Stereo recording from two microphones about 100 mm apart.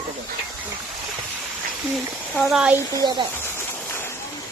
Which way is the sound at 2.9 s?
45° right (ahead or behind).